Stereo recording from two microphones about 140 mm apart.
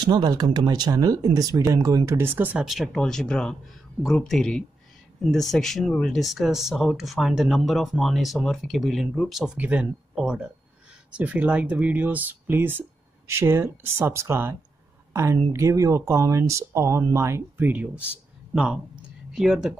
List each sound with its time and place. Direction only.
0.0 s speech: 30° right (ahead or behind); by 2.6 s 15° right (ahead or behind)
2.6 s speech: centre (ahead or behind)